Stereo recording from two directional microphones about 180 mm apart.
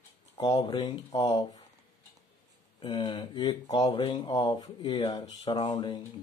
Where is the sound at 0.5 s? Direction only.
20° left (ahead or behind).